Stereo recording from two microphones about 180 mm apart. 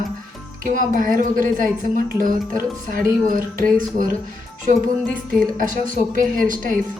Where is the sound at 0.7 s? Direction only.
50° right (ahead or behind).